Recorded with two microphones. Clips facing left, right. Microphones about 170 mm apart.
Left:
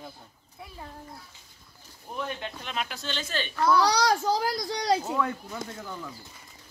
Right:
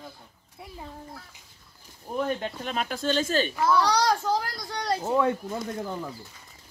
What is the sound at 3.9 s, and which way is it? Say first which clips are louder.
A child's voice: right 1 dB; 90° left.